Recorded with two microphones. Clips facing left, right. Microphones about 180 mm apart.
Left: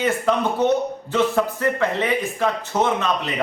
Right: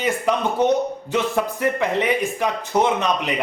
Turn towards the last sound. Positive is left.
turn(degrees=-15)  # may be behind; listen again after turning